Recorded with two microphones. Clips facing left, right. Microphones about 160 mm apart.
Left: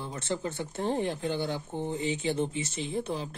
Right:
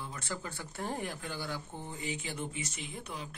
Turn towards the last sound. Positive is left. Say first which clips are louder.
# left 10 dB
turn(degrees=30)  # may be behind; listen again after turning